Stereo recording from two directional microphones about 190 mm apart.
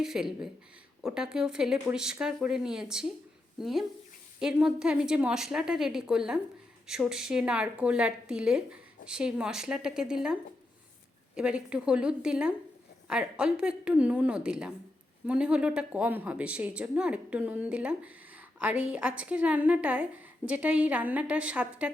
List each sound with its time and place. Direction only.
0.0 s a woman's voice: 5° right (ahead or behind)
11.3 s a woman's voice: 5° right (ahead or behind)